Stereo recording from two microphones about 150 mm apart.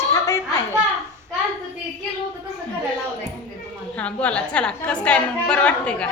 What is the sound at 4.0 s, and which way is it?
A woman's voice, 10° left (ahead or behind).